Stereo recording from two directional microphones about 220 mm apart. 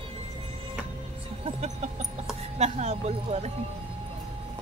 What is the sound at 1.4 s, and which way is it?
Speech, 30° right (ahead or behind).